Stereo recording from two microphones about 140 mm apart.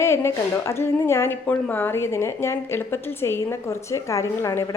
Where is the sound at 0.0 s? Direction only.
20° left (ahead or behind).